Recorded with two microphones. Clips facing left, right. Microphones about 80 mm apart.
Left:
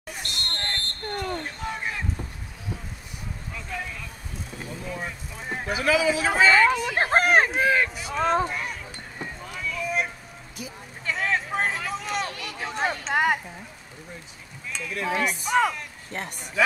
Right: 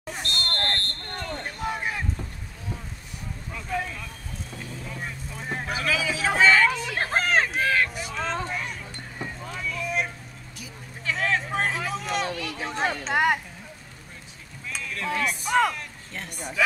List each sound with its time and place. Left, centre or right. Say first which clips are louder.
0.2 s smoke detector: right 4 dB; centre
1.4 s a sound: right 2 dB; centre
3.5 s vehicle: right 5 dB; centre
4.8 s vehicle: left 3 dB; centre
5.9 s a sound: left 5 dB; centre
8.5 s vehicle: left 1 dB; centre
11.1 s a sound: even; centre
14.8 s speech: left 2 dB; centre
15.5 s speech: even; centre
16.1 s a man's voice: left 6 dB; left